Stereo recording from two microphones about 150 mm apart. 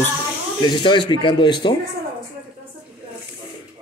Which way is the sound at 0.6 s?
30° left (ahead or behind).